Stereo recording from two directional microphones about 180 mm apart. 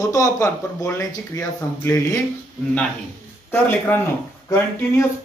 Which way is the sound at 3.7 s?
10° left (ahead or behind).